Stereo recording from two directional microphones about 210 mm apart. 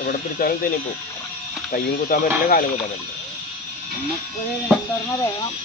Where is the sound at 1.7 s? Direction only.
40° left (ahead or behind).